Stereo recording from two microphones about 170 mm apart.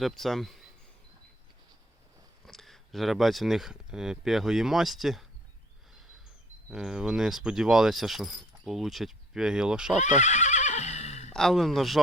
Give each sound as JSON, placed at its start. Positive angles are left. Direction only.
{"t": 0.0, "sound": "speech", "side_deg": 0}
{"t": 2.5, "sound": "speech", "side_deg": 0}
{"t": 6.7, "sound": "speech", "side_deg": -5}
{"t": 10.0, "sound": "neigh", "side_deg": 45}
{"t": 11.3, "sound": "speech", "side_deg": 0}